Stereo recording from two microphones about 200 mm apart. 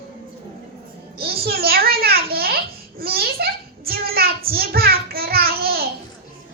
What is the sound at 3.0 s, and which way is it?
Child singing, 50° right (ahead or behind).